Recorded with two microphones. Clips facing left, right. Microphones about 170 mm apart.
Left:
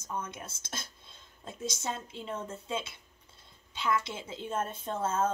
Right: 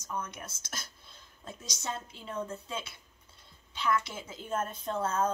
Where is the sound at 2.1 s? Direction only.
25° left (ahead or behind).